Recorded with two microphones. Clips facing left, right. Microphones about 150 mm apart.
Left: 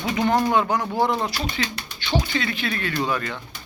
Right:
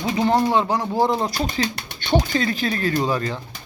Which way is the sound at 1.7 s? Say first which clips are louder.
Right 5 dB; 50° right (ahead or behind).